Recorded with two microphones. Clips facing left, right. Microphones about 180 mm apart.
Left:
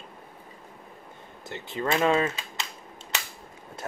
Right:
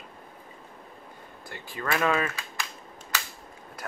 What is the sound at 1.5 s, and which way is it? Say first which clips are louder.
Speech: left 3 dB; 20° left (ahead or behind).